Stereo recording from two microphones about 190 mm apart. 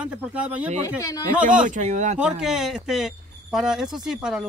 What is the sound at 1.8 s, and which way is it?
Speech, 40° right (ahead or behind).